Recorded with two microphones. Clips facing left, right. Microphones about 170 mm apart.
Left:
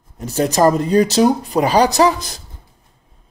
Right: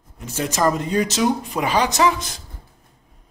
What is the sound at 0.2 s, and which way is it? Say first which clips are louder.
Speech: left 7 dB; 35° left (ahead or behind).